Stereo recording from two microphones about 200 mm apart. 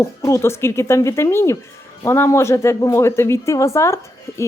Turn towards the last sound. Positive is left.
turn(degrees=15)  # may be behind; listen again after turning